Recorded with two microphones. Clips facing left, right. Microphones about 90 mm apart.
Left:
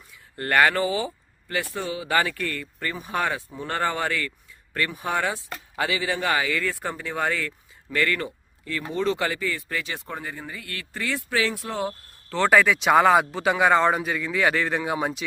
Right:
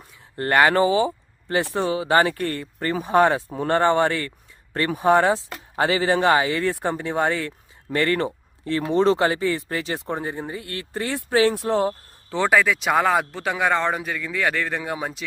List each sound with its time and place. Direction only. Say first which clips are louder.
0.3 s speech: right 3 dB; 25° right (ahead or behind)
11.4 s speech: right 8 dB; 35° right (ahead or behind)
12.5 s speech: left 2 dB; centre (ahead or behind)